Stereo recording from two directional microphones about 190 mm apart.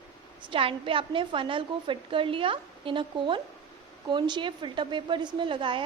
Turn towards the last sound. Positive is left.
turn(degrees=-25)  # may be behind; listen again after turning